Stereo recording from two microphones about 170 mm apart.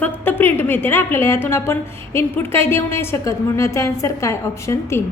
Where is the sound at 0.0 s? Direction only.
10° left (ahead or behind).